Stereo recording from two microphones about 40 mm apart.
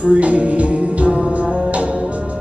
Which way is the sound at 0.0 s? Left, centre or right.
Right.